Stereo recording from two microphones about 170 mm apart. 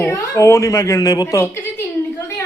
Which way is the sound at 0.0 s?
15° left (ahead or behind).